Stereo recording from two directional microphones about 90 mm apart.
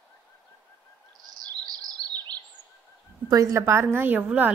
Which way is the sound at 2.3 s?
50° right (ahead or behind).